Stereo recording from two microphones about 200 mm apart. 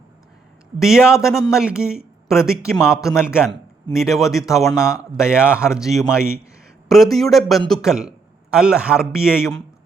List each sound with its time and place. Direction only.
0.8 s speech: 5° right (ahead or behind)
6.1 s speech: 15° left (ahead or behind)
6.8 s a man's voice: centre (ahead or behind)
9.3 s speech: 15° left (ahead or behind)